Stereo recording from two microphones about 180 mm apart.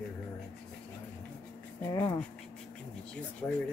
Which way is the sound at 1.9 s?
20° left (ahead or behind).